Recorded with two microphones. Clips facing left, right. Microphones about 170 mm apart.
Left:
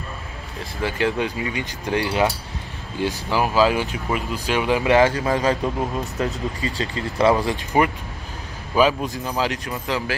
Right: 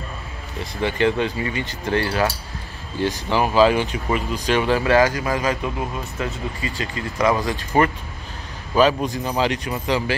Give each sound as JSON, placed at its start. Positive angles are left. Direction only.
{"t": 0.8, "sound": "speech", "side_deg": 5}
{"t": 3.0, "sound": "speech", "side_deg": 5}
{"t": 7.7, "sound": "speech", "side_deg": 10}